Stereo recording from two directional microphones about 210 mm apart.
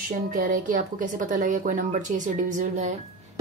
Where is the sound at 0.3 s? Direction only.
40° right (ahead or behind).